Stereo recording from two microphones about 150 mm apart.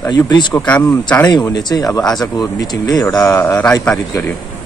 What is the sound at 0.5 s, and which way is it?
Speech, 10° left (ahead or behind).